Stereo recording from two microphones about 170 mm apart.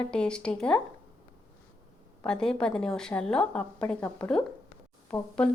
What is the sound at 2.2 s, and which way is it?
A woman's voice, 5° left (ahead or behind).